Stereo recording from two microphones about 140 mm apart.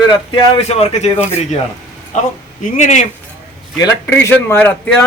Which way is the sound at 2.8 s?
55° left (ahead or behind).